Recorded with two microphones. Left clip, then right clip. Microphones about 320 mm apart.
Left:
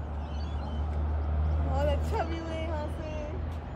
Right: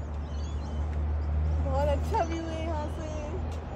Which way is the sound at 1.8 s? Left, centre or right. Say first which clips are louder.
Right 3 dB; right.